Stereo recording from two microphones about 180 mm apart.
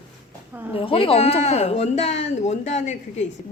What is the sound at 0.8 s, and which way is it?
A woman's voice, 30° left (ahead or behind).